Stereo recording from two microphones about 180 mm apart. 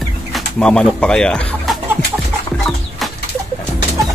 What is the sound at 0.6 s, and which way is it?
Speech, 5° left (ahead or behind).